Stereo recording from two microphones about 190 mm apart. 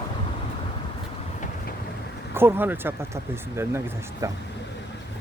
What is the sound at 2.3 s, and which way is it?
Speech, 10° right (ahead or behind).